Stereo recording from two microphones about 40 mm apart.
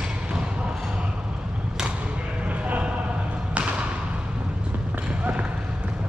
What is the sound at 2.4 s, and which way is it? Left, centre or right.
Basketball bounce, right.